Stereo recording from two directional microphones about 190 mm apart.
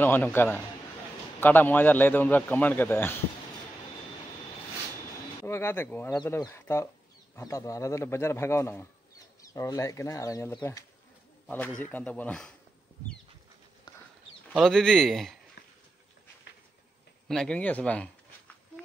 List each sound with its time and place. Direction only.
0.0 s a man's voice: 10° left (ahead or behind)
5.5 s a man's voice: 10° left (ahead or behind)
14.5 s speech: centre (ahead or behind)
17.3 s a man's voice: 5° left (ahead or behind)